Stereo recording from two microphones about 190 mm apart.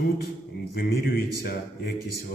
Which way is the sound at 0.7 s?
55° left (ahead or behind).